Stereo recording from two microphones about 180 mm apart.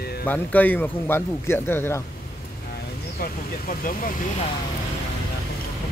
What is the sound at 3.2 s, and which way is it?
Speech, 50° left (ahead or behind).